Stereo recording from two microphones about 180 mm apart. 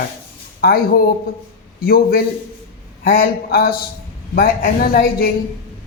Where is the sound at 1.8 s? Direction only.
55° left (ahead or behind).